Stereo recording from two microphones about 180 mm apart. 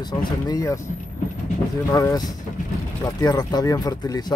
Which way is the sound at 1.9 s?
20° left (ahead or behind).